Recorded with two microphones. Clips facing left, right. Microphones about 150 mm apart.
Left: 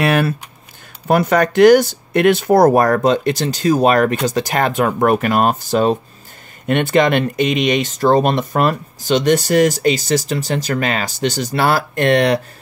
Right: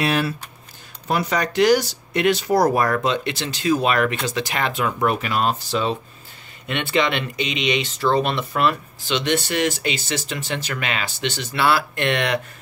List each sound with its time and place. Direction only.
0.0 s speech: 55° left (ahead or behind); by 12.4 s 40° left (ahead or behind)